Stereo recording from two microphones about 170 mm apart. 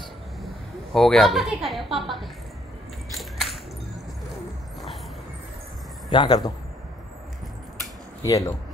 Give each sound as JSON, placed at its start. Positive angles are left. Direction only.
{"t": 0.4, "sound": "a woman's voice", "side_deg": 0}
{"t": 3.2, "sound": "a sound", "side_deg": 0}
{"t": 6.0, "sound": "speech", "side_deg": 25}
{"t": 8.2, "sound": "speech", "side_deg": 20}